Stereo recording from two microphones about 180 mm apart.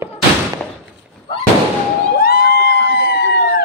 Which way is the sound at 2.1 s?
55° left (ahead or behind).